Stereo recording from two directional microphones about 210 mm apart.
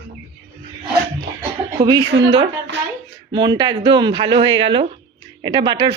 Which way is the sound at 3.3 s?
20° right (ahead or behind).